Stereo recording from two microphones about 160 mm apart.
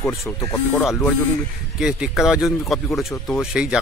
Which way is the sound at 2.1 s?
Centre (ahead or behind).